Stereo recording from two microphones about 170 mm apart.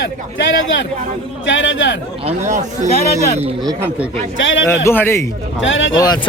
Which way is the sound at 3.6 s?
20° right (ahead or behind).